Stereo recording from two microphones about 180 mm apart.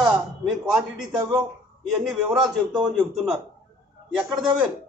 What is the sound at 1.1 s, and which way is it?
Speech, 25° right (ahead or behind).